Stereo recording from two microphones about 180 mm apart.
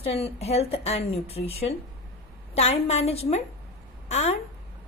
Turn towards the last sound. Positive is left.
turn(degrees=35)  # may be behind; listen again after turning